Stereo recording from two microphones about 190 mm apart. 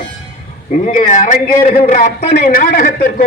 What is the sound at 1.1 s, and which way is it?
A man's voice, 40° left (ahead or behind).